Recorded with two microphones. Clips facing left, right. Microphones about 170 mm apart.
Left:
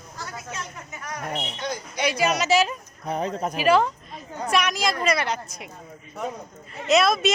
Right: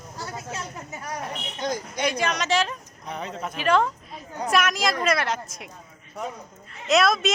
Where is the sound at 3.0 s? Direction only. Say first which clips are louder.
Left 6 dB; 40° left (ahead or behind).